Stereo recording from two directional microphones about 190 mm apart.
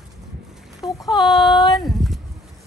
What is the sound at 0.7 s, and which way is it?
Speech, centre (ahead or behind).